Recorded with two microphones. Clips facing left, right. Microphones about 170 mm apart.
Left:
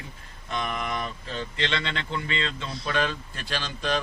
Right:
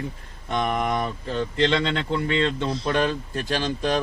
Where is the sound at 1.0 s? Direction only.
60° right (ahead or behind).